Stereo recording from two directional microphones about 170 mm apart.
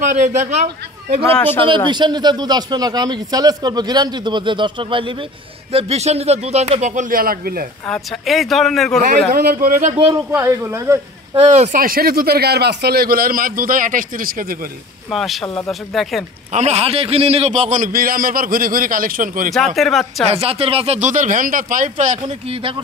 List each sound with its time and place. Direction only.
0.0 s a man's voice: 45° right (ahead or behind)
1.9 s speech: 25° right (ahead or behind); by 7.6 s 60° right (ahead or behind)
7.8 s speech: centre (ahead or behind)
9.3 s a man's voice: 65° right (ahead or behind)
10.1 s speech: 15° right (ahead or behind)
11.3 s speech: 40° right (ahead or behind)
11.7 s a man's voice: 55° right (ahead or behind)
15.0 s speech: centre (ahead or behind)
16.5 s a man's voice: 40° right (ahead or behind)
19.5 s speech: centre (ahead or behind)
20.2 s a man's voice: 35° right (ahead or behind)
22.2 s speech: 30° right (ahead or behind)